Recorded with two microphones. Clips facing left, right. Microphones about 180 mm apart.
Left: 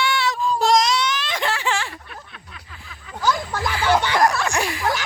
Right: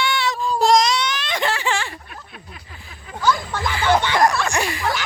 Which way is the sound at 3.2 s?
15° left (ahead or behind).